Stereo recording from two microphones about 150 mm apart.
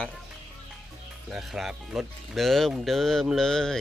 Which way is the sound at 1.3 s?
Centre (ahead or behind).